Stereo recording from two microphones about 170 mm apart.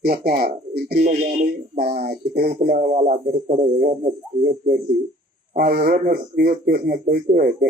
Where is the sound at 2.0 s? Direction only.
65° right (ahead or behind).